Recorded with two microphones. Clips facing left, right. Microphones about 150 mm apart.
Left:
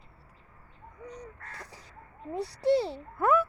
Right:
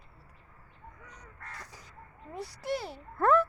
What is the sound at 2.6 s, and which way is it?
Speech, 30° left (ahead or behind).